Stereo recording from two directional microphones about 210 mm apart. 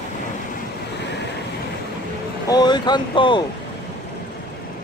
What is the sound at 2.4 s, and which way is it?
Speech, 20° left (ahead or behind).